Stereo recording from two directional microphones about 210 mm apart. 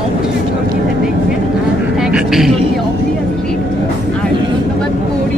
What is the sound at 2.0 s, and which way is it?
Speech, 5° right (ahead or behind).